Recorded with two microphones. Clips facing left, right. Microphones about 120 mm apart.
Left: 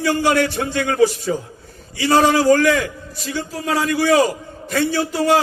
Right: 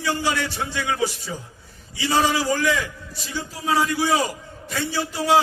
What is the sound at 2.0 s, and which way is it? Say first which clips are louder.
A man's voice: left 6 dB; 60° left (ahead or behind).